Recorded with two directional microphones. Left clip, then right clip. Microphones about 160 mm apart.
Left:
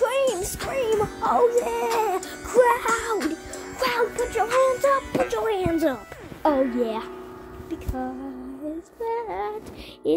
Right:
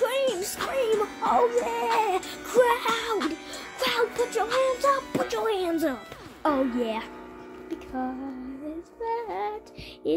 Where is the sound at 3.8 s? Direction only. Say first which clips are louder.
Left 2 dB; 20° left (ahead or behind).